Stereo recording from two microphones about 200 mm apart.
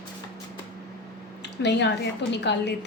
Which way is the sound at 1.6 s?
60° left (ahead or behind).